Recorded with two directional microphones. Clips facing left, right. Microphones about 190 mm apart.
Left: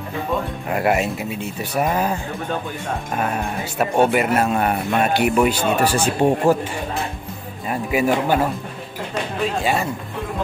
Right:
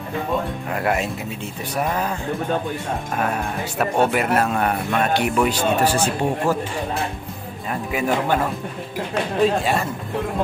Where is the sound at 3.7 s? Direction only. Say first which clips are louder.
Left 2 dB; centre (ahead or behind).